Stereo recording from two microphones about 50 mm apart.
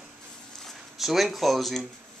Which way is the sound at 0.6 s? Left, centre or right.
Centre.